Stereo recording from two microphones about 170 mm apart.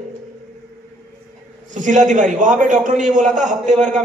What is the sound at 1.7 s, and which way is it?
A man's voice, 45° right (ahead or behind).